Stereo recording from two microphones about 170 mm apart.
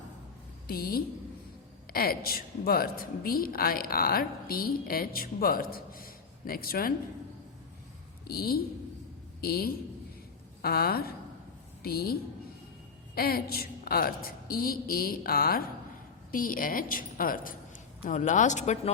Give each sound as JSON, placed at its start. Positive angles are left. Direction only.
{"t": 0.7, "sound": "a woman's voice", "side_deg": 65}
{"t": 8.3, "sound": "a woman's voice", "side_deg": 65}
{"t": 13.1, "sound": "a woman's voice", "side_deg": 65}